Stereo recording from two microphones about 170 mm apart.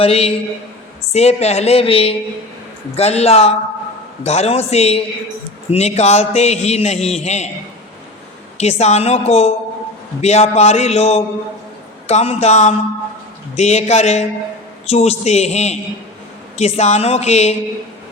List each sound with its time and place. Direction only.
0.0 s a man's voice: 35° left (ahead or behind)
8.5 s a man's voice: 40° left (ahead or behind)